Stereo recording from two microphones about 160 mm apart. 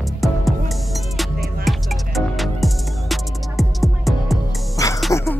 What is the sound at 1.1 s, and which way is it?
Music, centre (ahead or behind).